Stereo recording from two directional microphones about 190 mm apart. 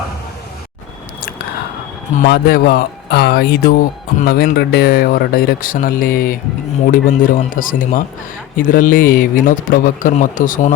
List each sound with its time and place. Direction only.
2.2 s speech: 55° left (ahead or behind)